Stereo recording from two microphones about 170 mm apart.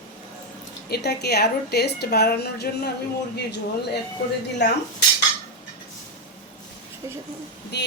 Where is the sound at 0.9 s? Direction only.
70° left (ahead or behind).